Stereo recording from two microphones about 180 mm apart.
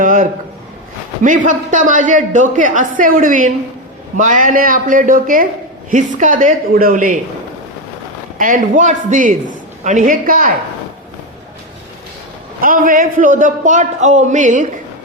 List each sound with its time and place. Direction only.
0.0 s a sound: 50° right (ahead or behind)
1.2 s a man's voice: 45° right (ahead or behind)
8.4 s a man's voice: 45° right (ahead or behind)
12.6 s a man's voice: 50° right (ahead or behind)